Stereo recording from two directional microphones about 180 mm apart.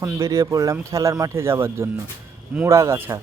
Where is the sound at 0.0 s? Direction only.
15° right (ahead or behind).